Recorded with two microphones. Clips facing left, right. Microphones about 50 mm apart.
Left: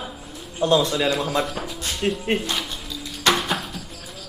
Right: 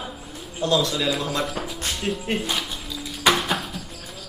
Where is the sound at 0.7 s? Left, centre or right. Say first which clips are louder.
Left 2 dB; centre.